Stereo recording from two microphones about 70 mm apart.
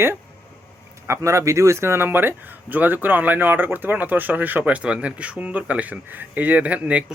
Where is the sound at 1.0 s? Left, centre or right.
Right.